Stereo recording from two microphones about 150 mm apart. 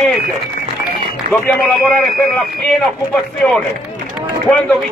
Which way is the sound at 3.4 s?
10° left (ahead or behind).